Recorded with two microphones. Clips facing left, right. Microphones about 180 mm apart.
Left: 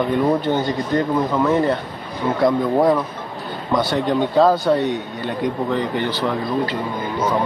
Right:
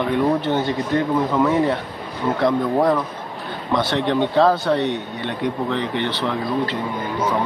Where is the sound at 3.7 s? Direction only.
Centre (ahead or behind).